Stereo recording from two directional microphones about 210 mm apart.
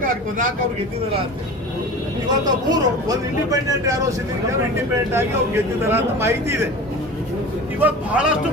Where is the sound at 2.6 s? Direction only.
20° right (ahead or behind).